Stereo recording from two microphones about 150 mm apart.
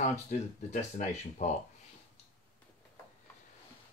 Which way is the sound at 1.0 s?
55° left (ahead or behind).